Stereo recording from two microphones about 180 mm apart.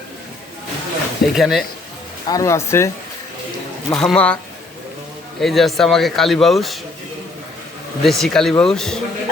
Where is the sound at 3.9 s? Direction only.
5° left (ahead or behind).